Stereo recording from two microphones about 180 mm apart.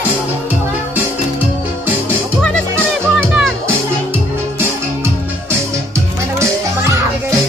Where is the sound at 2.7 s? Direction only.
15° right (ahead or behind).